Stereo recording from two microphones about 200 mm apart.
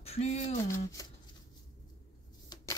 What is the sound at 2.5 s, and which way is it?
Shuffling cards, 20° left (ahead or behind).